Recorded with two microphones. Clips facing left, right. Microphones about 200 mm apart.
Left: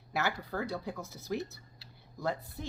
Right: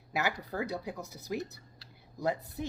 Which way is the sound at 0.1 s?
15° right (ahead or behind).